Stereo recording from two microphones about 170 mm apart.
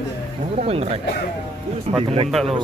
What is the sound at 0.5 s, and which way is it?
A man's voice, 35° right (ahead or behind).